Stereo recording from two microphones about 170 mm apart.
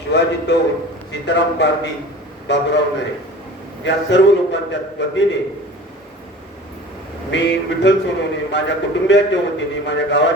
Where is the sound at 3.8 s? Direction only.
90° left.